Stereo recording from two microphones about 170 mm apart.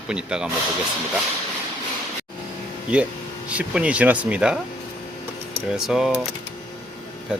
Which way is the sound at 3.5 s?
10° right (ahead or behind).